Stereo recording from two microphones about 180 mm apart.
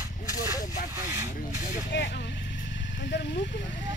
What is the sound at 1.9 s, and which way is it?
Vehicle, 75° left (ahead or behind).